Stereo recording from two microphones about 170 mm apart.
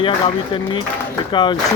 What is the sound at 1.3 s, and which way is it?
Speech, 30° left (ahead or behind).